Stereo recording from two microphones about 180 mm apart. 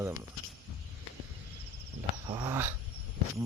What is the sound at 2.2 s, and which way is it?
Dog, 25° right (ahead or behind).